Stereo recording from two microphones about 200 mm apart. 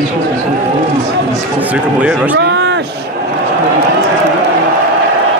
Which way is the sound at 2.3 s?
60° right (ahead or behind).